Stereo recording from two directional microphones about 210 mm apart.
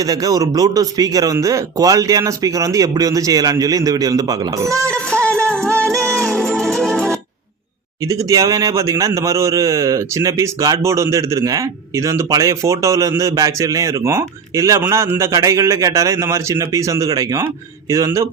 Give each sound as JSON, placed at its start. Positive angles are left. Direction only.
{"t": 0.0, "sound": "a man's voice", "side_deg": -15}
{"t": 5.0, "sound": "music", "side_deg": 5}
{"t": 8.0, "sound": "a man's voice", "side_deg": -15}